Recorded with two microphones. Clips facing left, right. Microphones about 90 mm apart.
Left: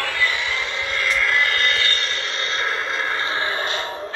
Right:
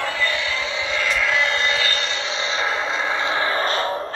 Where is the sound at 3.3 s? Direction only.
35° right (ahead or behind).